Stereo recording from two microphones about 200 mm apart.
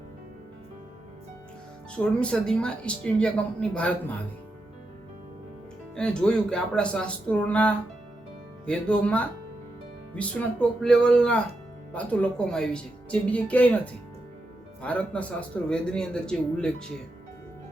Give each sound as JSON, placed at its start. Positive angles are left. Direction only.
{"t": 2.0, "sound": "speech", "side_deg": 5}
{"t": 6.0, "sound": "speech", "side_deg": 5}